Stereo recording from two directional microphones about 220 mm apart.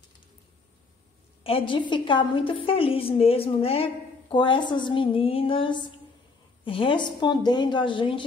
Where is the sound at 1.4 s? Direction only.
25° left (ahead or behind).